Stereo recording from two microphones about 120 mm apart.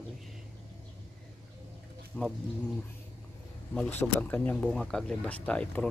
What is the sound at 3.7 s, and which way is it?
Speech, 10° left (ahead or behind).